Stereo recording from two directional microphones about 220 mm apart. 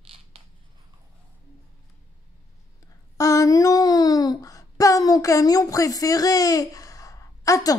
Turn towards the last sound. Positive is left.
turn(degrees=15)  # may be behind; listen again after turning